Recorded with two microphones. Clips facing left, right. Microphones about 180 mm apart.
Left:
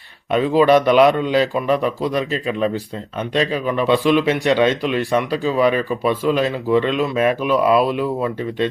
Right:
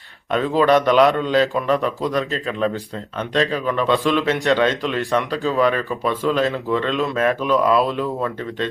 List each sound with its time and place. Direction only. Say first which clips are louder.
0.3 s speech: left 3 dB; 10° left (ahead or behind)